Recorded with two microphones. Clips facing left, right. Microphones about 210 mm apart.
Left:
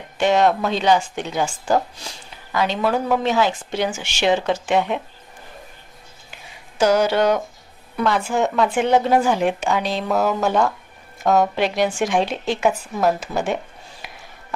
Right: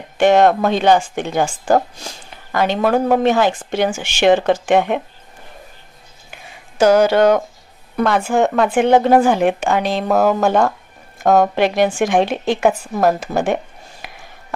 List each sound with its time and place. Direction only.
0.2 s speech: 55° right (ahead or behind)
6.8 s speech: 50° right (ahead or behind)